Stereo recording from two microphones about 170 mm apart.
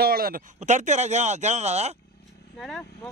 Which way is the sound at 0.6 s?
45° right (ahead or behind).